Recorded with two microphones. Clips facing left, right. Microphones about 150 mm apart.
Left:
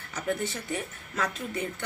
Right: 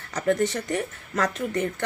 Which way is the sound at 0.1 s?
90° right.